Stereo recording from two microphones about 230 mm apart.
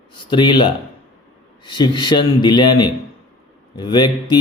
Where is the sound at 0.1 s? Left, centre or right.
Left.